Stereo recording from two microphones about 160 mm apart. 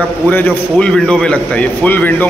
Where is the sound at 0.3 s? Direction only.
10° left (ahead or behind).